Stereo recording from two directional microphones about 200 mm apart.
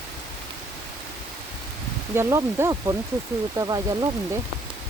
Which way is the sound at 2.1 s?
15° right (ahead or behind).